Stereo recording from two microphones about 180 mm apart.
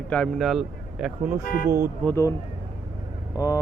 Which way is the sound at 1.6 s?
15° right (ahead or behind).